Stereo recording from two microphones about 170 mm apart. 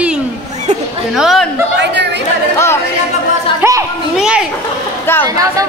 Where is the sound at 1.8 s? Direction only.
90° right.